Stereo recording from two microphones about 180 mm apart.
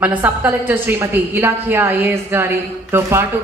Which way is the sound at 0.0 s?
10° right (ahead or behind).